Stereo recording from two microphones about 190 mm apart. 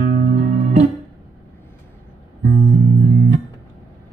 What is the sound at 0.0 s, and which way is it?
Music, 40° right (ahead or behind).